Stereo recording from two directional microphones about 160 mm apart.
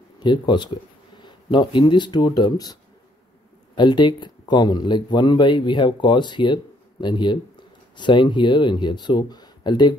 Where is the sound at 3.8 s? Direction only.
30° left (ahead or behind).